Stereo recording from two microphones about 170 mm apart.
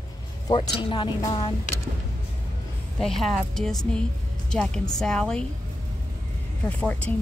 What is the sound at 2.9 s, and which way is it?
Speech, centre (ahead or behind).